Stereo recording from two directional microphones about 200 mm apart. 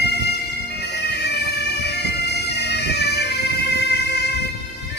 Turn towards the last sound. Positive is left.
turn(degrees=55)  # may be behind; listen again after turning